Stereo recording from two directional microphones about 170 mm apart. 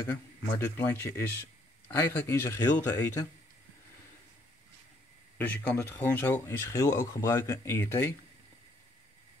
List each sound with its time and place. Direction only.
0.0 s speech: 10° left (ahead or behind)
5.4 s speech: 10° left (ahead or behind)